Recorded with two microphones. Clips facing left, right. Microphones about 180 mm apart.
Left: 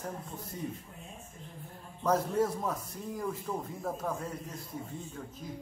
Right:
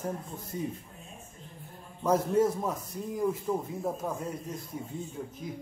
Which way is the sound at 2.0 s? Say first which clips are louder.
Right 3 dB; 10° right (ahead or behind).